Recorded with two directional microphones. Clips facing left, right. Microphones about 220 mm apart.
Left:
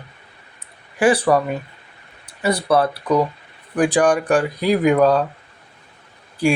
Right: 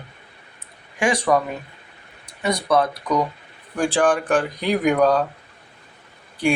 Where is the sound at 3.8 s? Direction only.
15° left (ahead or behind).